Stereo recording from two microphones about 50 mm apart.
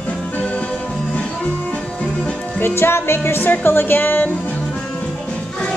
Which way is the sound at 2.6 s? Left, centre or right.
Left.